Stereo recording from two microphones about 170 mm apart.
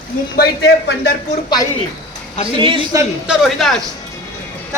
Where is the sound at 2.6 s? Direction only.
30° right (ahead or behind).